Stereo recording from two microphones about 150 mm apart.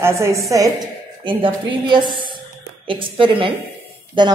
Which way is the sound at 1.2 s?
35° right (ahead or behind).